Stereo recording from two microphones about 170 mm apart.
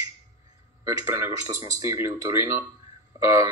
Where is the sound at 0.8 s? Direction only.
15° right (ahead or behind).